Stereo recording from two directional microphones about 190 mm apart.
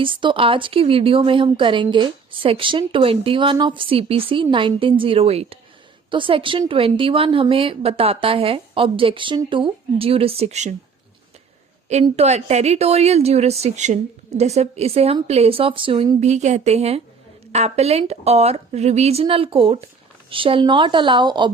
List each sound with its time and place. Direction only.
0.0 s speech: 25° right (ahead or behind)
11.9 s a woman's voice: 35° right (ahead or behind)